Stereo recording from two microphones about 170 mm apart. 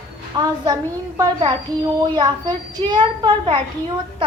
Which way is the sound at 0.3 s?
25° right (ahead or behind).